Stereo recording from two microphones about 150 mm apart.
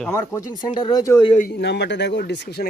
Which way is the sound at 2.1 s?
90° left.